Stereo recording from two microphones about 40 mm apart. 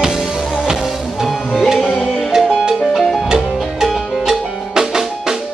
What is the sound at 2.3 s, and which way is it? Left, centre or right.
Music, centre.